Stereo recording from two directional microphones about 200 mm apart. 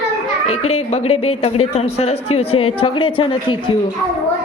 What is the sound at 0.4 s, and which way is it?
A woman's voice, 30° left (ahead or behind).